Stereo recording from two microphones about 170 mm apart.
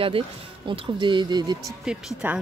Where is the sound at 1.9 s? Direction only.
5° right (ahead or behind).